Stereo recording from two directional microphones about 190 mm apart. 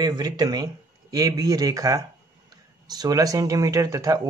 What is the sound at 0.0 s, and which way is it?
Speech, 20° right (ahead or behind).